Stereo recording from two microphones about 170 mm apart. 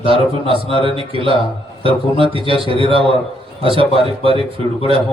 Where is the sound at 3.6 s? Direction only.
30° right (ahead or behind).